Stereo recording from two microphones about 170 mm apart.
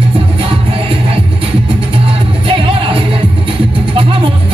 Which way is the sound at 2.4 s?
30° right (ahead or behind).